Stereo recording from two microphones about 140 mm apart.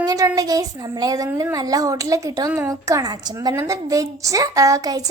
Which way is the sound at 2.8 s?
25° right (ahead or behind).